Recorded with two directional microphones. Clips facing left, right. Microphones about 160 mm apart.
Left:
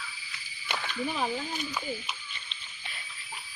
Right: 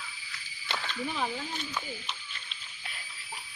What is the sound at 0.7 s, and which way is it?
Speech, 15° left (ahead or behind).